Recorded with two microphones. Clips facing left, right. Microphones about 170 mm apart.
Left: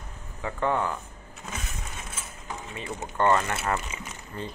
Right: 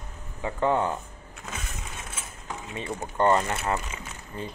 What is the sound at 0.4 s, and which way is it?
Speech, 20° right (ahead or behind).